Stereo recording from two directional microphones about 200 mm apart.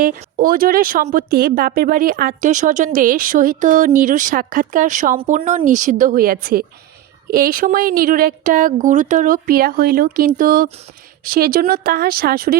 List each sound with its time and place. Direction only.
0.0 s a woman's voice: 45° right (ahead or behind)